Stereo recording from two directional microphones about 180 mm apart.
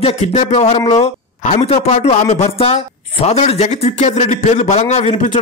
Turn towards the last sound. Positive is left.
turn(degrees=35)  # may be behind; listen again after turning